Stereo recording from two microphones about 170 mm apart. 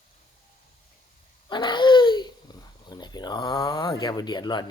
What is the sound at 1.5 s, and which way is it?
Babbling, 25° left (ahead or behind).